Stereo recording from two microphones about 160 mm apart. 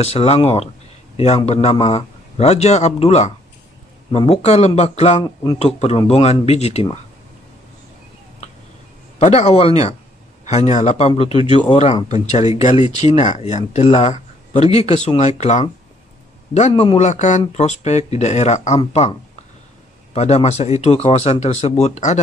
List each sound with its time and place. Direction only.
0.0 s a man's voice: 40° left (ahead or behind)
5.2 s a man's voice: 25° left (ahead or behind)
5.6 s a man's voice: 40° left (ahead or behind)
9.2 s a man's voice: 40° left (ahead or behind)
12.1 s a man's voice: 45° left (ahead or behind)
20.2 s speech: 40° left (ahead or behind)